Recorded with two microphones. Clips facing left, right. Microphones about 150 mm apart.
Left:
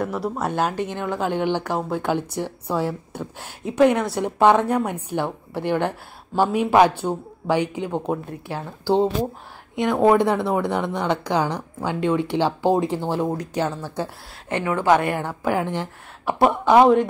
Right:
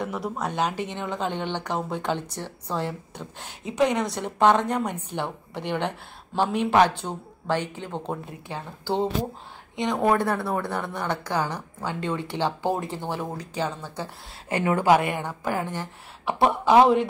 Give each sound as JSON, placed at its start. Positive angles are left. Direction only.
{"t": 0.0, "sound": "a woman's voice", "side_deg": 0}
{"t": 9.9, "sound": "a woman's voice", "side_deg": 15}
{"t": 14.8, "sound": "a woman's voice", "side_deg": -10}
{"t": 15.0, "sound": "a woman's voice", "side_deg": 5}